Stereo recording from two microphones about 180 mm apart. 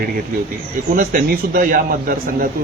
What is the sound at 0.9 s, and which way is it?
A man's voice, 50° right (ahead or behind).